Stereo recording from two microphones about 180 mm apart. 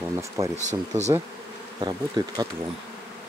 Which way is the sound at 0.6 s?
40° right (ahead or behind).